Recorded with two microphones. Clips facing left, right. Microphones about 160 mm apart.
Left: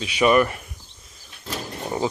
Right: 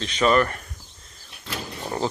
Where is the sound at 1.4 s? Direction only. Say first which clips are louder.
Left 2 dB; 5° left (ahead or behind).